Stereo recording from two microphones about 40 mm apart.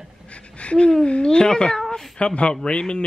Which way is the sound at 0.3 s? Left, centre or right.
Left.